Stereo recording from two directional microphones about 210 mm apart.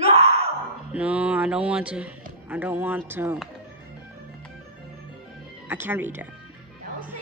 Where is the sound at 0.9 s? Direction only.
5° right (ahead or behind).